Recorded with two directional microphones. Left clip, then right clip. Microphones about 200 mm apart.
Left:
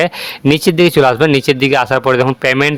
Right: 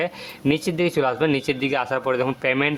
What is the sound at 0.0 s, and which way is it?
Speech, 40° left (ahead or behind).